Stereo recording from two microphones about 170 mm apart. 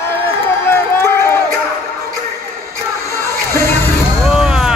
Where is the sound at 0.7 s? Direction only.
15° left (ahead or behind).